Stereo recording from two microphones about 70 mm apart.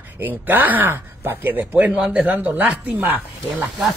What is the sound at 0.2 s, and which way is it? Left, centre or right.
Speech, right.